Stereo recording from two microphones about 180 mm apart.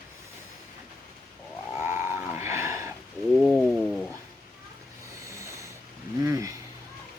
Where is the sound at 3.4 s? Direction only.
Centre (ahead or behind).